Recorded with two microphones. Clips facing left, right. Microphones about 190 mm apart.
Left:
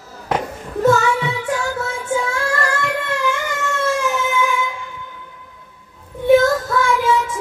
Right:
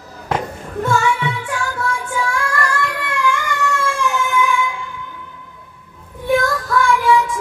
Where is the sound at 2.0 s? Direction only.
25° left (ahead or behind).